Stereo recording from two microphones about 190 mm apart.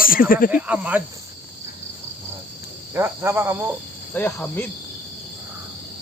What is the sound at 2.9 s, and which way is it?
Speech, 10° right (ahead or behind).